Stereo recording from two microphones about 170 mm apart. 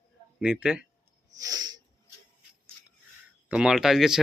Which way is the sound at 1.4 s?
25° right (ahead or behind).